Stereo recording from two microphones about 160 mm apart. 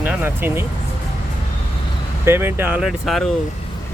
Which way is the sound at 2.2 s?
15° right (ahead or behind).